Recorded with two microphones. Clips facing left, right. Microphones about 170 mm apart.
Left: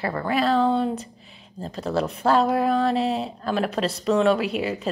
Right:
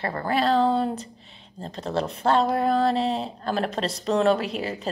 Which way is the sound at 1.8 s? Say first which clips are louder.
Left 2 dB; 30° right (ahead or behind).